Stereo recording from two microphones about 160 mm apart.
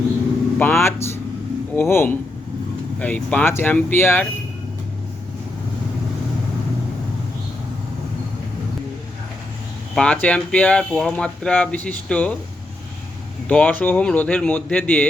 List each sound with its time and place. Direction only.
0.6 s speech: 15° left (ahead or behind)
9.9 s speech: 5° left (ahead or behind)
13.5 s speech: 10° left (ahead or behind)